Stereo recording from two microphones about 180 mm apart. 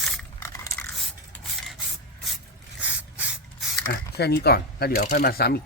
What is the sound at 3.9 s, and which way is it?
Speech, 65° left (ahead or behind).